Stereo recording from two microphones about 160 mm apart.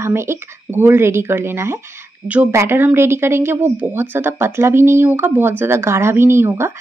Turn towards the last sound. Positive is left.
turn(degrees=-15)  # may be behind; listen again after turning